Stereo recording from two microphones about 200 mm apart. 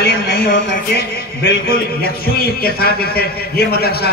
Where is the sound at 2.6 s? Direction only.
50° left (ahead or behind).